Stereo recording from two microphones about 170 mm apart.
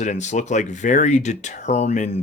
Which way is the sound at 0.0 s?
45° left (ahead or behind).